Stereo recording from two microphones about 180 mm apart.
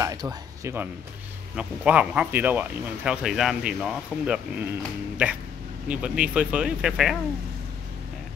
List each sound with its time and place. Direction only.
0.0 s speech: 20° right (ahead or behind)
1.5 s a man's voice: 5° right (ahead or behind)